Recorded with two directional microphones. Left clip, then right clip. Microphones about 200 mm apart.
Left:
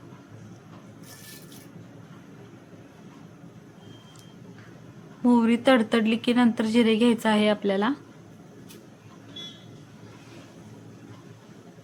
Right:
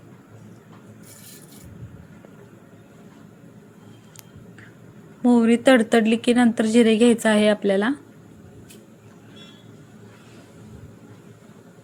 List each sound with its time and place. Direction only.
5.2 s a woman's voice: 15° right (ahead or behind)